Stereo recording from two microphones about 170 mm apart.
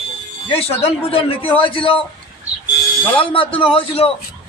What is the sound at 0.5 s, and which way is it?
A man's voice, 35° left (ahead or behind).